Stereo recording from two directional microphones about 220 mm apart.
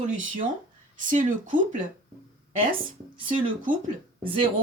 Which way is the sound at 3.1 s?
20° right (ahead or behind).